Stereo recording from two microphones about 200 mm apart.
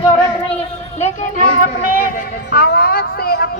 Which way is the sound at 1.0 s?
45° left (ahead or behind).